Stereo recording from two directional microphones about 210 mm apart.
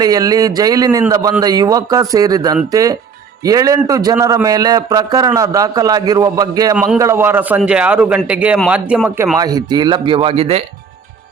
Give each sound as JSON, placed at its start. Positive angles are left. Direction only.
{"t": 0.0, "sound": "a man's voice", "side_deg": -15}